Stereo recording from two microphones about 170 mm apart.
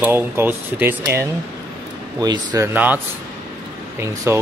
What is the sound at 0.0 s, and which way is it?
Speech, 10° right (ahead or behind).